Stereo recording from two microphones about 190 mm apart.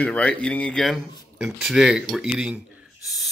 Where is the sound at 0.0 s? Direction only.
5° left (ahead or behind).